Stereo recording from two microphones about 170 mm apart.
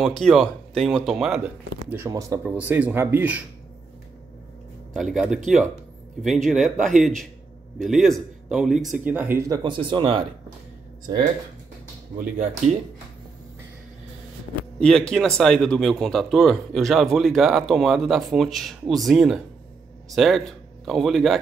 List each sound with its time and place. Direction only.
0.0 s speech: centre (ahead or behind)
1.9 s speech: 15° right (ahead or behind)
2.5 s speech: 10° right (ahead or behind)
4.9 s speech: centre (ahead or behind)
9.6 s speech: 30° right (ahead or behind)
12.2 s speech: 45° right (ahead or behind)
14.8 s speech: 5° left (ahead or behind)